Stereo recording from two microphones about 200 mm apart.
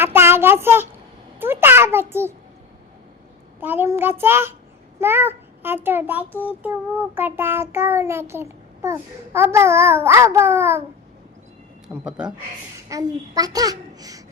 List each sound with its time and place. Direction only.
0.0 s child singing: 10° right (ahead or behind)
3.6 s child singing: 10° right (ahead or behind)
4.9 s a child's voice: 10° right (ahead or behind)
6.4 s child singing: 10° right (ahead or behind)
12.0 s speech: 5° right (ahead or behind)
12.9 s child singing: 20° right (ahead or behind)